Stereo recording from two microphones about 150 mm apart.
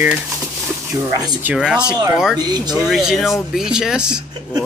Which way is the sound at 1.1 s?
25° right (ahead or behind).